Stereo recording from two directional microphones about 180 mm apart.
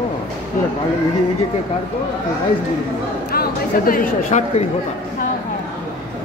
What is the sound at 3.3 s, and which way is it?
Speech, 55° left (ahead or behind).